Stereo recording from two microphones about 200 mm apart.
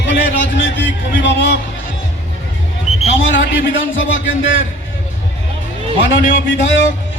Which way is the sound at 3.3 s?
70° left (ahead or behind).